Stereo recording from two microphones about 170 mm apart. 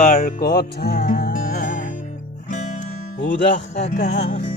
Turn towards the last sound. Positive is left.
turn(degrees=45)  # may be behind; listen again after turning